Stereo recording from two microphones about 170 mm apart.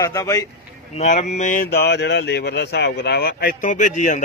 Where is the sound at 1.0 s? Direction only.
40° left (ahead or behind).